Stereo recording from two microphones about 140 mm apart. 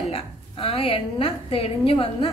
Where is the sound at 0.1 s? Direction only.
45° left (ahead or behind).